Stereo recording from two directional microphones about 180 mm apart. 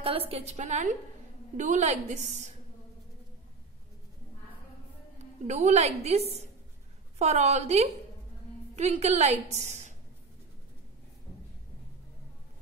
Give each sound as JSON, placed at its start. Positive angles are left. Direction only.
{"t": 0.0, "sound": "a woman's voice", "side_deg": -30}
{"t": 5.5, "sound": "a woman's voice", "side_deg": -40}